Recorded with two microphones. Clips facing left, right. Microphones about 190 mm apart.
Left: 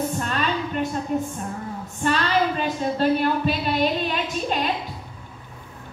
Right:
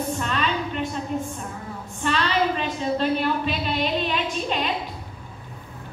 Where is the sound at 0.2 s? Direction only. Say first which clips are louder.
Even; 45° left (ahead or behind).